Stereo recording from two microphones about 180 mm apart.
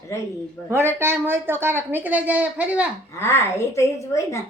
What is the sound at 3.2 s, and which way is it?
A woman's voice, 15° left (ahead or behind).